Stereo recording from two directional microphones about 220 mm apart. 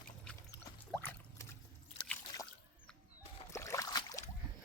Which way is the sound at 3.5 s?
15° left (ahead or behind).